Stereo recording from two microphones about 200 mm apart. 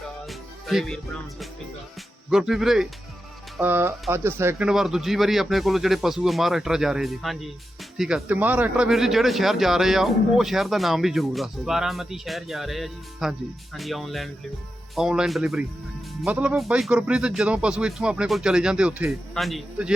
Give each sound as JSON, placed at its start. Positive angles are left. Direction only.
{"t": 0.3, "sound": "music", "side_deg": 0}
{"t": 2.3, "sound": "speech", "side_deg": 0}